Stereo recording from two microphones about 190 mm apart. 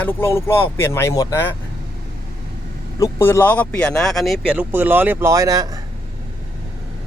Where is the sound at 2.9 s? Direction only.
15° left (ahead or behind); by 5.7 s 20° right (ahead or behind).